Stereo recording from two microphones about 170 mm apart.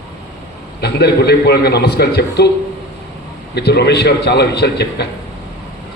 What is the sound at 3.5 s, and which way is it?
A man's voice, 75° left (ahead or behind).